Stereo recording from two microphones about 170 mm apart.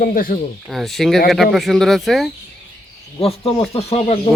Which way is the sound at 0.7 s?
Centre (ahead or behind).